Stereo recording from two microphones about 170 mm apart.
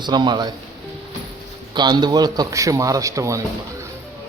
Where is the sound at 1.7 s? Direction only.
25° right (ahead or behind).